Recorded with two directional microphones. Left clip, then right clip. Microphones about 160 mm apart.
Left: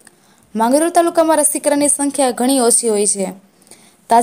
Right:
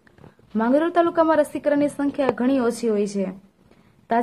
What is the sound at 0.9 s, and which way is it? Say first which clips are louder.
Speech: left 5 dB; 25° left (ahead or behind).